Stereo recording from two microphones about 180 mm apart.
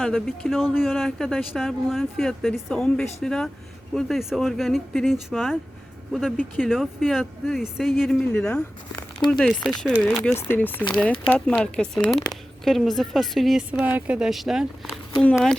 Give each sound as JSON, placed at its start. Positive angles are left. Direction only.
{"t": 0.0, "sound": "speech", "side_deg": 0}
{"t": 6.6, "sound": "speech", "side_deg": 0}
{"t": 12.3, "sound": "a sound", "side_deg": 0}
{"t": 13.0, "sound": "speech", "side_deg": 0}